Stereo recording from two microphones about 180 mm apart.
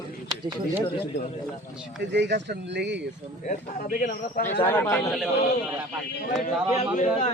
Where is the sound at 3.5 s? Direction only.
50° left (ahead or behind).